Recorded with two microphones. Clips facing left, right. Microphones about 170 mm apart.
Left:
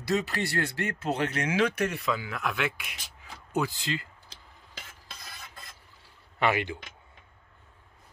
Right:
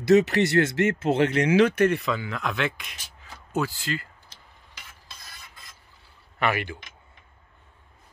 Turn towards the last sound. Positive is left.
turn(degrees=20)  # may be behind; listen again after turning